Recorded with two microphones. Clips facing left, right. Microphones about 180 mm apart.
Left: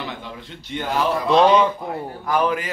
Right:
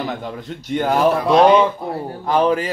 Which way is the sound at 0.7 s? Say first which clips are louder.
Right 6 dB; 55° right (ahead or behind).